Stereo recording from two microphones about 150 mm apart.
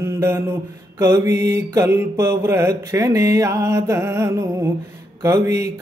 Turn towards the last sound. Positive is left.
turn(degrees=-20)  # may be behind; listen again after turning